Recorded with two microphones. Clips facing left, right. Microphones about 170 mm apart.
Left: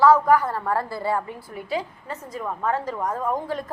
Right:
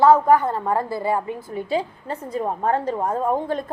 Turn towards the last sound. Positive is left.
turn(degrees=-25)  # may be behind; listen again after turning